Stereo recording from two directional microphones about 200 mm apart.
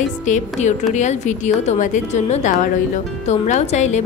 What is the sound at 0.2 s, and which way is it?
Speech, 35° left (ahead or behind).